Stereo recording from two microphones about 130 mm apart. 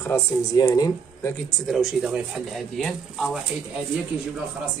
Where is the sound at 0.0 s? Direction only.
20° left (ahead or behind).